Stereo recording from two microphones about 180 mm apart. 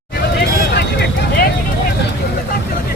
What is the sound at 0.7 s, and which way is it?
Vehicle, 65° left (ahead or behind).